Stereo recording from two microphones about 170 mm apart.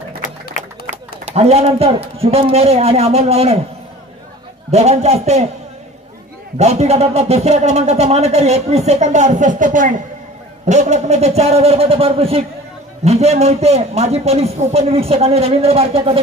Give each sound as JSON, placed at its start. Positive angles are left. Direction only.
{"t": 0.8, "sound": "speech", "side_deg": -40}
{"t": 4.6, "sound": "speech", "side_deg": -40}
{"t": 6.6, "sound": "speech", "side_deg": -40}